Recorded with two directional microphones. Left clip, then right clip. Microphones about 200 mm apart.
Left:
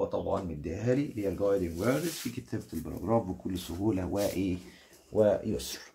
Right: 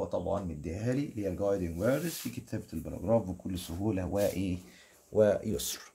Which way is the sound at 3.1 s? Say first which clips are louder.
Even; 50° right (ahead or behind).